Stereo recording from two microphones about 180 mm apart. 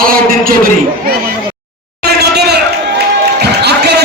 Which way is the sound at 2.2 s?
65° right (ahead or behind).